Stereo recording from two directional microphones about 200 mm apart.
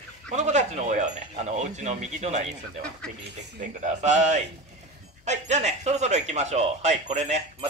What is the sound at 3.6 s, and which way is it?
Speech, 35° right (ahead or behind).